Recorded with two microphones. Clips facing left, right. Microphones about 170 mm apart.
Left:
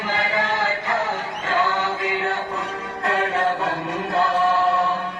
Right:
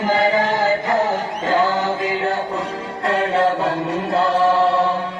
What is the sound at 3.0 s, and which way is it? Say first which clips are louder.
Chant: right 4 dB; 30° right (ahead or behind).